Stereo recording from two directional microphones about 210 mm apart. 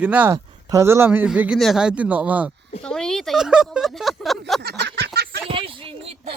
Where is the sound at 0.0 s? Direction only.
5° right (ahead or behind).